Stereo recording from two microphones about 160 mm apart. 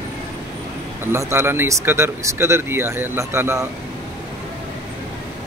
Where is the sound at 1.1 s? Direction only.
15° right (ahead or behind).